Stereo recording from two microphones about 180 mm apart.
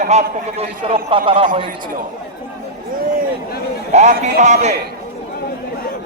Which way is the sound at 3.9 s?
40° right (ahead or behind).